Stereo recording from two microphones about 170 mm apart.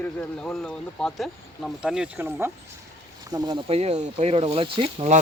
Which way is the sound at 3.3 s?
25° right (ahead or behind).